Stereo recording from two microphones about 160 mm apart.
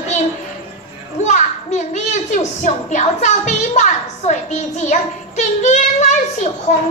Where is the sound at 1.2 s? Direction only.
45° left (ahead or behind).